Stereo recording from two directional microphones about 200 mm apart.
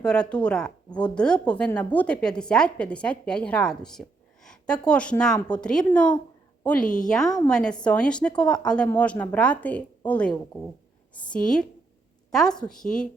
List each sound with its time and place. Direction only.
0.0 s a woman's voice: 5° left (ahead or behind)
6.8 s a woman's voice: 40° left (ahead or behind)
7.1 s a woman's voice: 5° left (ahead or behind)